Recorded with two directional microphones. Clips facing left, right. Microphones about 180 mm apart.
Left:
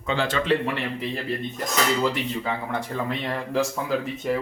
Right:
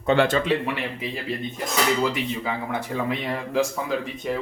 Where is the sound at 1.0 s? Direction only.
5° right (ahead or behind).